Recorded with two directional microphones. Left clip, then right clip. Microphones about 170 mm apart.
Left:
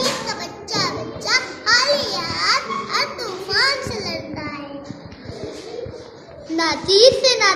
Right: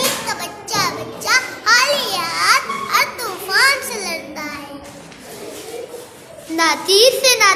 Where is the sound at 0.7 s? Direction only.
20° right (ahead or behind).